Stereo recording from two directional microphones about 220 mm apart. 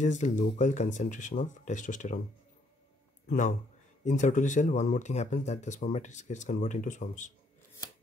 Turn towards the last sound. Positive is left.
turn(degrees=35)  # may be behind; listen again after turning